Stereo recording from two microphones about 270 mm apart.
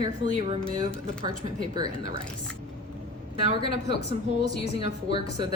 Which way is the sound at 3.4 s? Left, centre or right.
Left.